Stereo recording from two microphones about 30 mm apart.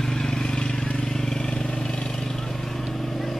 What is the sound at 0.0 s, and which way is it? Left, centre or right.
Vehicle, left.